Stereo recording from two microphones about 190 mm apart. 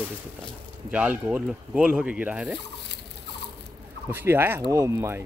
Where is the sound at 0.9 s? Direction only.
5° right (ahead or behind).